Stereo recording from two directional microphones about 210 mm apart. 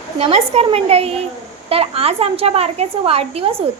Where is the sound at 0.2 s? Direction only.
30° right (ahead or behind).